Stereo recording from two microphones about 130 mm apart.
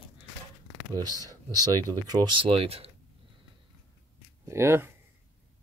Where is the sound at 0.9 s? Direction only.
30° right (ahead or behind).